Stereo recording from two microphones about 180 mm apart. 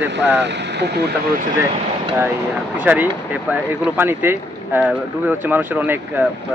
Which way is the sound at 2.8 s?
10° right (ahead or behind).